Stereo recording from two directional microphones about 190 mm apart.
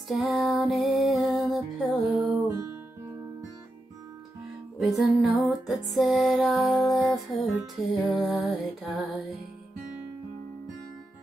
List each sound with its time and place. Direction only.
0.1 s music: centre (ahead or behind)
2.4 s music: 15° right (ahead or behind)
4.7 s music: centre (ahead or behind)